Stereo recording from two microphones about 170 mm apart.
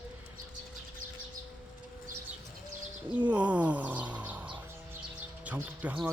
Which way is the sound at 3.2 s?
10° right (ahead or behind).